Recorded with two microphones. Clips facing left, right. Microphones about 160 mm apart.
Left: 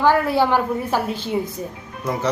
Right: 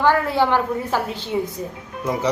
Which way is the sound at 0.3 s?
10° left (ahead or behind).